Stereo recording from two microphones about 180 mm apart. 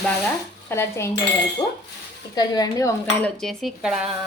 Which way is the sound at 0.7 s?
15° left (ahead or behind).